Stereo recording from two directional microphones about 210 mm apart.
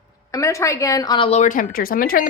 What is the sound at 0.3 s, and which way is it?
Speech, 15° left (ahead or behind).